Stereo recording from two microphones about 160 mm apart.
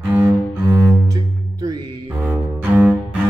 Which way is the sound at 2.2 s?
10° right (ahead or behind).